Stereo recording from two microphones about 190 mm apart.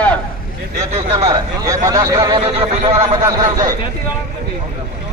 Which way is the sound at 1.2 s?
20° right (ahead or behind).